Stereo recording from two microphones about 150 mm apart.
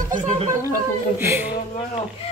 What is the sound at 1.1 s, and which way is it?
Speech, 15° right (ahead or behind).